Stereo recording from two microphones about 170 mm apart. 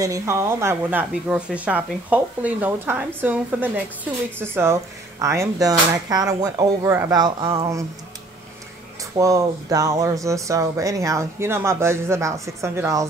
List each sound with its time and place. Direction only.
0.0 s speech: 15° right (ahead or behind)
9.1 s speech: 20° right (ahead or behind)